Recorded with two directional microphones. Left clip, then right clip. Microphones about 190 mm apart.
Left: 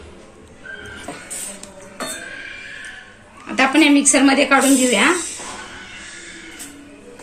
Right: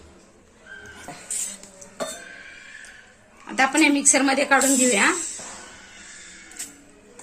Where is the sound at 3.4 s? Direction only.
55° right (ahead or behind).